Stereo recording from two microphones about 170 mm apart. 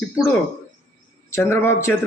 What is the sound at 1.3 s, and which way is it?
Speech, 15° left (ahead or behind).